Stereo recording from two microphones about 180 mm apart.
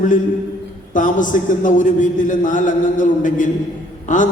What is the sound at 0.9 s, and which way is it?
A man's voice, 45° left (ahead or behind).